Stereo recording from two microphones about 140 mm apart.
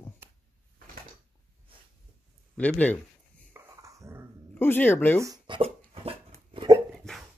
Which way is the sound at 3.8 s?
20° right (ahead or behind).